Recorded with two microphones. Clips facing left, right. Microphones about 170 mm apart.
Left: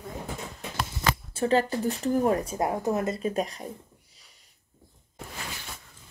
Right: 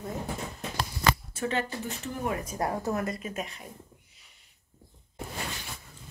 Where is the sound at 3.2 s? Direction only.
35° left (ahead or behind).